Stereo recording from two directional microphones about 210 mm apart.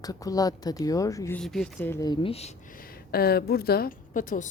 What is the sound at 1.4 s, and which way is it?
A woman's voice, centre (ahead or behind).